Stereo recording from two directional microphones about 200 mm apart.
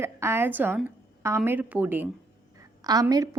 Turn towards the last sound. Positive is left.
turn(degrees=-20)  # may be behind; listen again after turning